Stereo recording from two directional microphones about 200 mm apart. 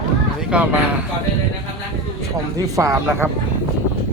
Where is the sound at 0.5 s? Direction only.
5° right (ahead or behind).